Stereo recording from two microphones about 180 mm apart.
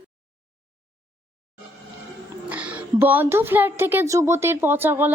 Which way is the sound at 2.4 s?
5° right (ahead or behind).